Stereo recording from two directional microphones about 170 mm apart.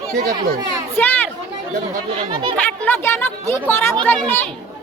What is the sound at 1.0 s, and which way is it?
Speech, 10° left (ahead or behind).